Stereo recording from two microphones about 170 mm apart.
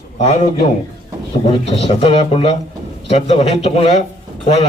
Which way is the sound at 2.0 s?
35° left (ahead or behind).